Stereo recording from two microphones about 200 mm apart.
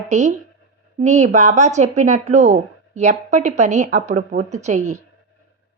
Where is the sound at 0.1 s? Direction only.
35° right (ahead or behind).